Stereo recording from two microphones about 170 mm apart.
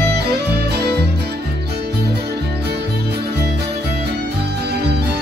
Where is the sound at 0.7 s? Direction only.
75° right (ahead or behind).